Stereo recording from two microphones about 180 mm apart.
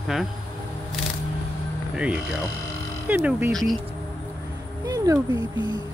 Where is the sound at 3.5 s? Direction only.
Centre (ahead or behind).